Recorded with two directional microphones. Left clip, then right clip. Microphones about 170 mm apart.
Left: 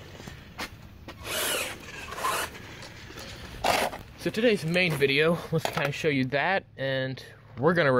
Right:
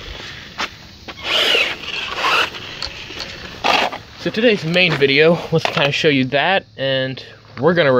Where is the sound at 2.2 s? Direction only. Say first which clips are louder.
Right 13 dB; 20° right (ahead or behind).